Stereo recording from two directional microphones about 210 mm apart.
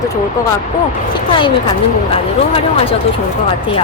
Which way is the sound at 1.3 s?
25° left (ahead or behind).